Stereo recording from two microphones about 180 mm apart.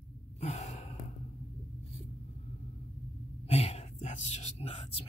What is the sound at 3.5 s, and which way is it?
Whispering, 35° left (ahead or behind).